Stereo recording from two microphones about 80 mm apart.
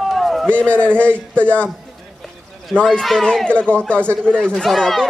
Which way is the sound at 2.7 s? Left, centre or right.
Centre.